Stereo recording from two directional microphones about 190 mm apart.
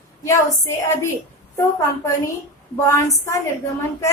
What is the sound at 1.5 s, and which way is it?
A child's voice, 15° left (ahead or behind).